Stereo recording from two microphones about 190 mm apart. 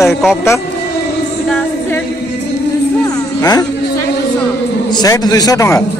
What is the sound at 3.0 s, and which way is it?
Music, 20° left (ahead or behind).